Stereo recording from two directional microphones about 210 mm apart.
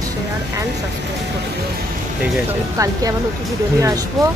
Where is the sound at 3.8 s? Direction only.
15° right (ahead or behind).